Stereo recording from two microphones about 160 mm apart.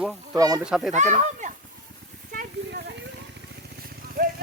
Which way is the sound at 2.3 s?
60° right (ahead or behind).